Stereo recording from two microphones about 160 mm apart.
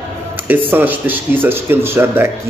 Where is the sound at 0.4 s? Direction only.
10° right (ahead or behind).